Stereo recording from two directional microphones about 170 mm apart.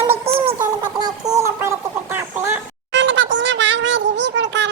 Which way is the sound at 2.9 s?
90° right.